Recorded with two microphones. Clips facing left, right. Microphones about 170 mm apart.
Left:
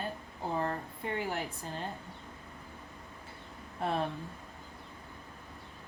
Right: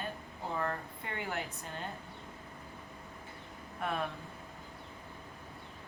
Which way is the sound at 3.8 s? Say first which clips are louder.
Left 3 dB; 30° left (ahead or behind).